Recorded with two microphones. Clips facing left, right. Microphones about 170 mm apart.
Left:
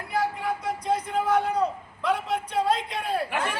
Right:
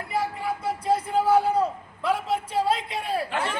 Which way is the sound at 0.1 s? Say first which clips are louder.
Left 1 dB; centre (ahead or behind).